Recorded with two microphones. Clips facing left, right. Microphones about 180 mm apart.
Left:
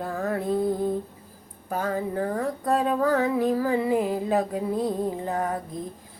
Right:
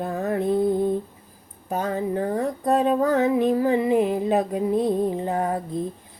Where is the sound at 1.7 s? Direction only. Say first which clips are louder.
Right 2 dB; 20° right (ahead or behind).